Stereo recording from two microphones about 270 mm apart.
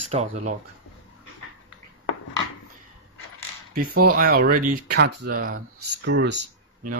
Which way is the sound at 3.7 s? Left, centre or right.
Right.